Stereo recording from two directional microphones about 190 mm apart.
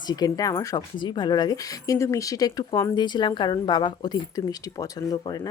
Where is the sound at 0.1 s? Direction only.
20° left (ahead or behind).